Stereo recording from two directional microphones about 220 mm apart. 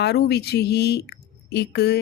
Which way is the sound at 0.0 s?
50° left (ahead or behind).